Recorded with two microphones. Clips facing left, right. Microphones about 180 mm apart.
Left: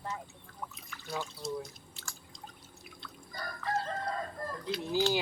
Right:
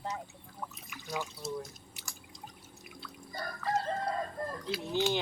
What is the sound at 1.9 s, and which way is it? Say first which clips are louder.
Drip: even; 15° right (ahead or behind).